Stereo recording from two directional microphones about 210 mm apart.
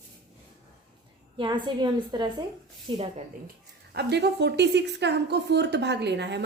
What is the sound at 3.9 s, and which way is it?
A woman's voice, 50° right (ahead or behind).